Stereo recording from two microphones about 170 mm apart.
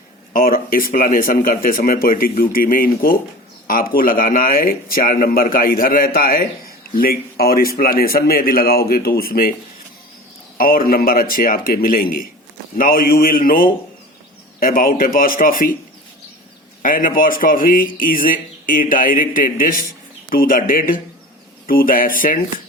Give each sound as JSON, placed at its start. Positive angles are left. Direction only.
{"t": 0.3, "sound": "a man's voice", "side_deg": 55}
{"t": 10.6, "sound": "a man's voice", "side_deg": 60}
{"t": 16.8, "sound": "a man's voice", "side_deg": 55}